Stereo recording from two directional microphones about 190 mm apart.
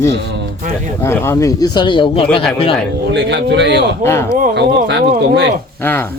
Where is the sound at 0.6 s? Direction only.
45° right (ahead or behind).